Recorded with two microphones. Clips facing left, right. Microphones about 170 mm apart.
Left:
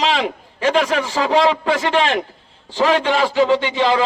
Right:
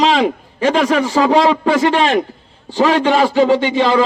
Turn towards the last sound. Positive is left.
turn(degrees=-45)  # may be behind; listen again after turning